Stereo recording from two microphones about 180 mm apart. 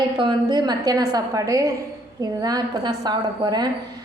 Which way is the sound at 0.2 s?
25° right (ahead or behind).